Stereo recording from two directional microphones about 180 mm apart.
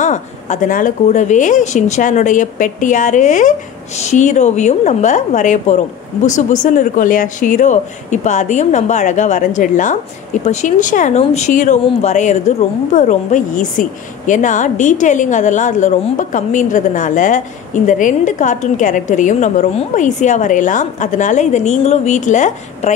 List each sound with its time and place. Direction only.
0.0 s speech: 45° left (ahead or behind)